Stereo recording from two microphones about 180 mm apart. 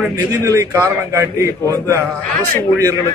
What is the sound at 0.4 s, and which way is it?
A man's voice, 15° right (ahead or behind).